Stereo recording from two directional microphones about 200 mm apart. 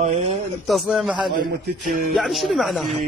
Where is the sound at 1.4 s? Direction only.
45° right (ahead or behind).